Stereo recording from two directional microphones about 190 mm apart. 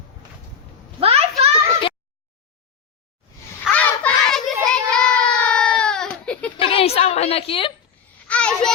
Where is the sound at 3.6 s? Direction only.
5° left (ahead or behind).